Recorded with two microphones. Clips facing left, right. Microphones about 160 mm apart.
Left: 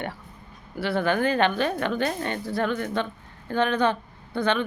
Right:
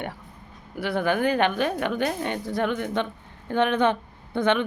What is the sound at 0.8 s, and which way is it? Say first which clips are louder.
A woman's voice: even; 15° right (ahead or behind).